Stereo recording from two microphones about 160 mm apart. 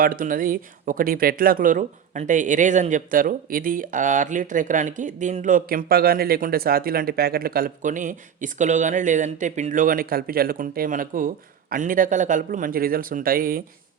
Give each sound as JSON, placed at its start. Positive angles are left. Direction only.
{"t": 0.0, "sound": "speech", "side_deg": -60}